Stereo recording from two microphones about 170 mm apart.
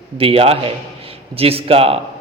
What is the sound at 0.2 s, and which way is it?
A man's voice, 35° right (ahead or behind).